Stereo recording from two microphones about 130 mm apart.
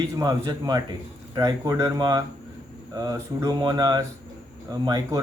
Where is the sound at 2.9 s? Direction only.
25° right (ahead or behind).